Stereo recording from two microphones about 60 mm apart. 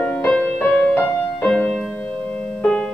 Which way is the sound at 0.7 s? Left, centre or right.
Left.